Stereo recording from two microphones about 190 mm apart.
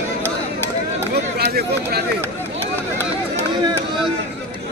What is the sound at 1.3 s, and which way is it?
Run, 55° right (ahead or behind).